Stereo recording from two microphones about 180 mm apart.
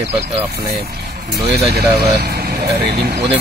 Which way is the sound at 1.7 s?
60° right (ahead or behind).